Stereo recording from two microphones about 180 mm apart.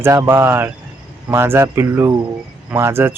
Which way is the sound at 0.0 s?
10° right (ahead or behind).